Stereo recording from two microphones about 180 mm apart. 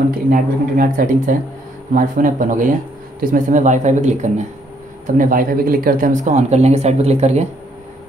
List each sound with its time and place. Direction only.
0.3 s speech: 50° right (ahead or behind)